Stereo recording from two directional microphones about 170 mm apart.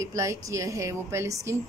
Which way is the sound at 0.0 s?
20° right (ahead or behind).